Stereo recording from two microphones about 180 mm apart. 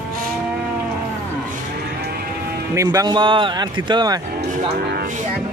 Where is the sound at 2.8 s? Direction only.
20° right (ahead or behind).